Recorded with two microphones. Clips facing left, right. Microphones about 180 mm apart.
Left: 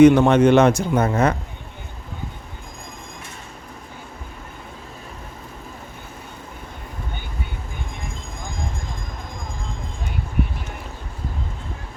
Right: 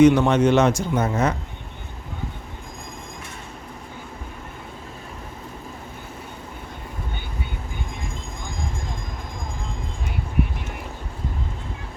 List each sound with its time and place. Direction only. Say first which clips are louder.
0.0 s a man's voice: left 3 dB; 55° left (ahead or behind)